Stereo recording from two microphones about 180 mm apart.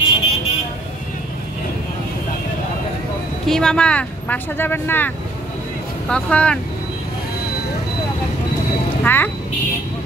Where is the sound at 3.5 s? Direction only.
5° left (ahead or behind).